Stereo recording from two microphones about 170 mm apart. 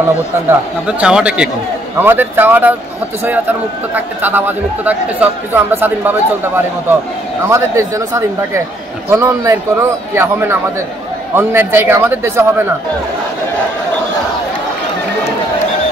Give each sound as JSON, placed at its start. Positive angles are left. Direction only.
{"t": 0.5, "sound": "speech", "side_deg": -5}
{"t": 3.9, "sound": "speech", "side_deg": -10}
{"t": 9.1, "sound": "speech", "side_deg": -15}